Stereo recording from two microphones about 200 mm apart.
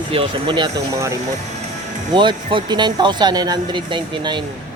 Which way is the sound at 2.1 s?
25° right (ahead or behind).